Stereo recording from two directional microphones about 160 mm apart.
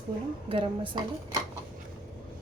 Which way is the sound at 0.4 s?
30° right (ahead or behind).